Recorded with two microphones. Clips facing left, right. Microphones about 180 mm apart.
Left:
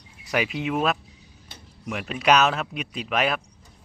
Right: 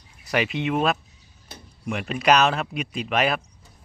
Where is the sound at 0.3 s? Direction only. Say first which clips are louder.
Right 2 dB; 5° left (ahead or behind).